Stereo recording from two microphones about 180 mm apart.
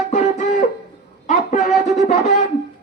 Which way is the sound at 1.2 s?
40° left (ahead or behind).